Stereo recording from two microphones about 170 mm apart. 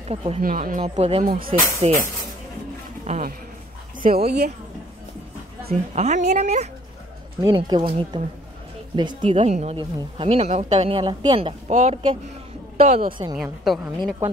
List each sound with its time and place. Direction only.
0.1 s speech: 35° right (ahead or behind)
0.4 s speech: 55° right (ahead or behind)
3.1 s speech: 50° right (ahead or behind)
4.2 s speech: 70° right (ahead or behind)
5.9 s speech: 40° right (ahead or behind)
7.4 s a woman's voice: 25° right (ahead or behind); by 13.1 s 40° right (ahead or behind)
13.4 s a woman's voice: centre (ahead or behind)